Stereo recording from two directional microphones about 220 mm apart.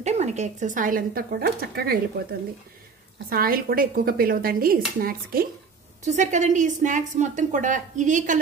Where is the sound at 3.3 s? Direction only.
40° right (ahead or behind).